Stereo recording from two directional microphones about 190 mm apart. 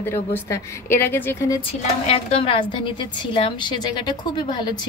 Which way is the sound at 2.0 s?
30° left (ahead or behind).